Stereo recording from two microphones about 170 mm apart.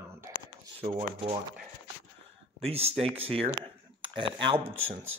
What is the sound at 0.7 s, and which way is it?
Speech, 35° right (ahead or behind).